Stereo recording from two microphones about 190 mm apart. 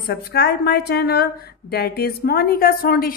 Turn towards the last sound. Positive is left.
turn(degrees=50)  # may be behind; listen again after turning